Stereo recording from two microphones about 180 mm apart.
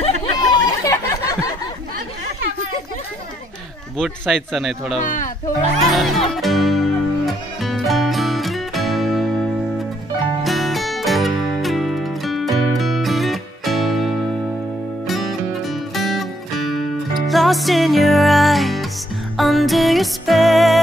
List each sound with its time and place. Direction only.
0.0 s chatter: 20° left (ahead or behind)
4.0 s a man's voice: centre (ahead or behind)
6.3 s music: centre (ahead or behind)